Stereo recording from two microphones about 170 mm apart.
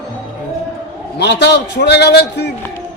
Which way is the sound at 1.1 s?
90° left.